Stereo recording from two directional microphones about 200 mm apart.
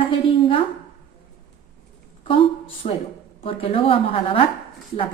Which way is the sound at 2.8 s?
30° left (ahead or behind).